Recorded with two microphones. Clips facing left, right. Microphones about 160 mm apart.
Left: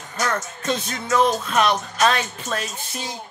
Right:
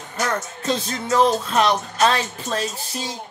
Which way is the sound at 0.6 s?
30° right (ahead or behind).